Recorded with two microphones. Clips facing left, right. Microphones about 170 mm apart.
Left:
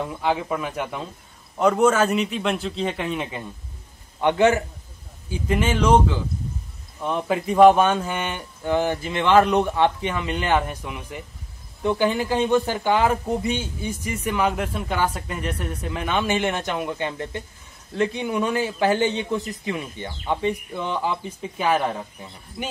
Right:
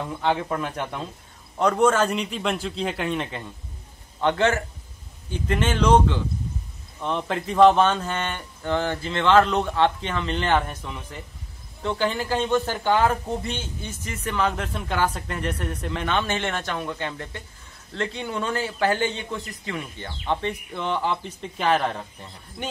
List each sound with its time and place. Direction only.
0.2 s a man's voice: 5° left (ahead or behind)